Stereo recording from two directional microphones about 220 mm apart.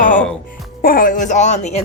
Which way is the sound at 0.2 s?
5° left (ahead or behind).